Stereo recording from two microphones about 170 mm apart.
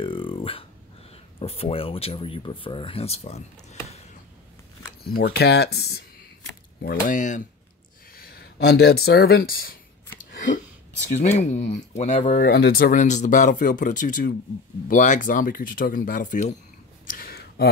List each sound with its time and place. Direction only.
0.0 s dog: 30° left (ahead or behind)
1.4 s speech: 35° left (ahead or behind)
5.0 s speech: 65° left (ahead or behind)
6.8 s speech: 55° left (ahead or behind)
8.2 s speech: 65° left (ahead or behind)
10.3 s a sound: 50° left (ahead or behind)
11.1 s speech: 40° left (ahead or behind)
12.4 s speech: 70° left (ahead or behind); by 16.5 s 45° left (ahead or behind)
17.0 s a sound: 55° left (ahead or behind)